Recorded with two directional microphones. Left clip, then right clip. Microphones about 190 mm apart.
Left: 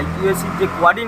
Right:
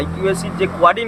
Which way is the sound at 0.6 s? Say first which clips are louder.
Right 1 dB; 25° right (ahead or behind).